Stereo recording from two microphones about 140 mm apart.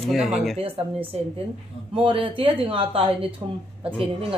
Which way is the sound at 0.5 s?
45° right (ahead or behind).